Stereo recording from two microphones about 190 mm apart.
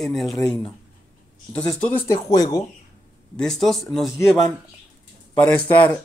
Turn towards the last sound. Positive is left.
turn(degrees=10)  # may be behind; listen again after turning